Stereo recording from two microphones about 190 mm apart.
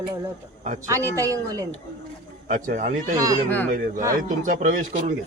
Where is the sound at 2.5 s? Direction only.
45° right (ahead or behind).